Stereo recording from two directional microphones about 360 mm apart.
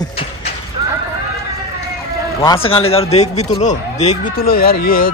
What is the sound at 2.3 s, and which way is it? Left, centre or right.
A man's voice, centre.